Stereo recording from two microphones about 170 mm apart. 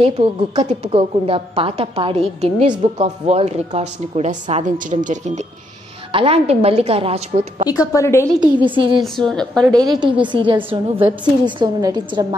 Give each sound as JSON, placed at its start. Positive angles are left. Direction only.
{"t": 0.0, "sound": "a woman's voice", "side_deg": -40}
{"t": 7.9, "sound": "a woman's voice", "side_deg": 15}
{"t": 8.2, "sound": "a woman's voice", "side_deg": -25}
{"t": 9.0, "sound": "a woman's voice", "side_deg": 5}
{"t": 9.7, "sound": "a woman's voice", "side_deg": -25}